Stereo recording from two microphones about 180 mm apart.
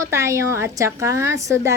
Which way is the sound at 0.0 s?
15° right (ahead or behind).